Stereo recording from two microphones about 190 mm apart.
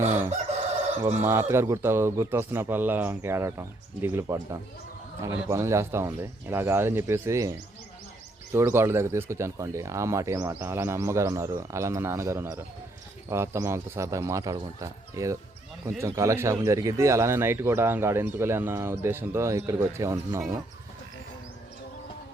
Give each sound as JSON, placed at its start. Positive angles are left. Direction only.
{"t": 0.0, "sound": "chicken", "side_deg": -10}
{"t": 0.5, "sound": "chicken", "side_deg": -35}
{"t": 1.0, "sound": "speech", "side_deg": -15}
{"t": 5.4, "sound": "speech", "side_deg": -15}
{"t": 8.5, "sound": "speech", "side_deg": -15}